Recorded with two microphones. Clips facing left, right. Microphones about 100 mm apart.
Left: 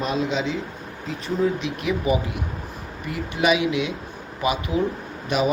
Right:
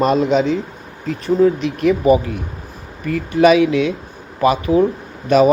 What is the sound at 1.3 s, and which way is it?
Speech, 40° right (ahead or behind).